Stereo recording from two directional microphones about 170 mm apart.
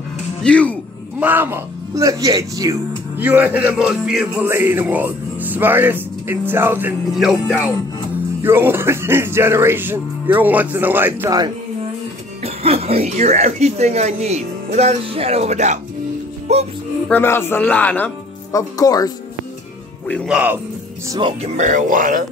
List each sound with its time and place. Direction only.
0.4 s speech: 5° left (ahead or behind)
1.2 s speech: 10° right (ahead or behind)
3.2 s music: 10° right (ahead or behind)
7.2 s music: centre (ahead or behind)
8.4 s music: 15° right (ahead or behind)
12.4 s speech: 35° right (ahead or behind)
17.1 s speech: 15° left (ahead or behind)
18.5 s speech: 20° left (ahead or behind)
20.2 s music: 10° right (ahead or behind)
21.1 s speech: 30° right (ahead or behind)
21.5 s speech: 45° right (ahead or behind)